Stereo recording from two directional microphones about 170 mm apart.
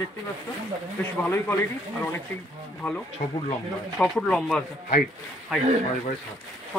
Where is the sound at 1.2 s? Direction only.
10° left (ahead or behind).